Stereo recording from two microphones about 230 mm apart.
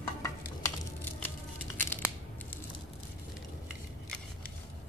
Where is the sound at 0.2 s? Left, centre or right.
Centre.